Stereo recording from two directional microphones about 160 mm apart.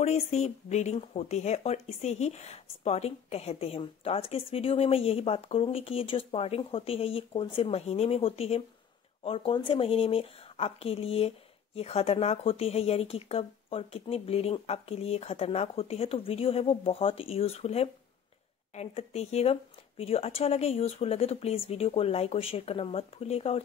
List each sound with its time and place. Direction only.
0.0 s speech: 45° left (ahead or behind)